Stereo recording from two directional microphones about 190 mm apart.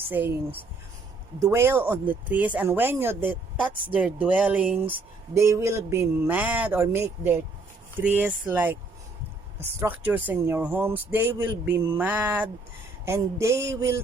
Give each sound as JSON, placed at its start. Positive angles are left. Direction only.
{"t": 0.1, "sound": "speech", "side_deg": -10}
{"t": 10.1, "sound": "speech", "side_deg": -10}